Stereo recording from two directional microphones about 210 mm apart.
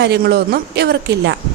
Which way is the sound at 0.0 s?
50° right (ahead or behind).